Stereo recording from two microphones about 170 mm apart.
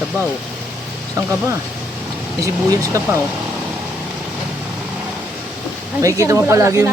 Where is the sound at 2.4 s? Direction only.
20° right (ahead or behind).